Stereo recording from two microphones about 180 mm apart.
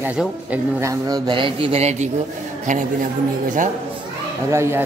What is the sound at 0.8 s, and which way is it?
A man's voice, 20° right (ahead or behind).